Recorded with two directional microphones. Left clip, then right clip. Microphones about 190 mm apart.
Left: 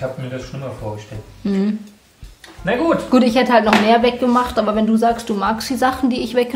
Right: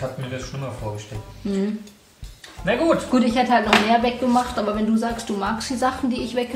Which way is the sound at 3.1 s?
55° left (ahead or behind).